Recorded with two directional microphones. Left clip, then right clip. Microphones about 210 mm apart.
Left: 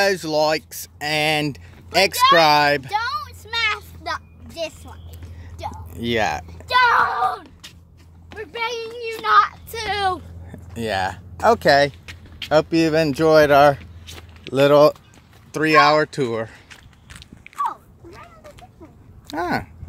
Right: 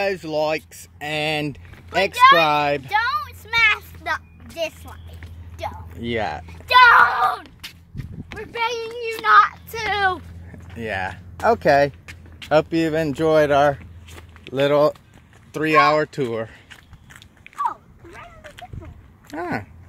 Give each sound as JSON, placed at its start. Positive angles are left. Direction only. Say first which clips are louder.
{"t": 0.0, "sound": "speech", "louder": "left 4 dB", "side_deg": 15}
{"t": 5.9, "sound": "speech", "louder": "left 4 dB", "side_deg": 10}
{"t": 8.5, "sound": "speech", "louder": "right 2 dB", "side_deg": 10}
{"t": 9.8, "sound": "speech", "louder": "right 1 dB", "side_deg": 15}
{"t": 11.3, "sound": "speech", "louder": "left 1 dB", "side_deg": 5}
{"t": 12.7, "sound": "speech", "louder": "left 3 dB", "side_deg": 15}
{"t": 15.5, "sound": "biting", "louder": "left 2 dB", "side_deg": 5}
{"t": 17.6, "sound": "a sound", "louder": "even", "side_deg": 5}
{"t": 19.2, "sound": "speech", "louder": "left 4 dB", "side_deg": 5}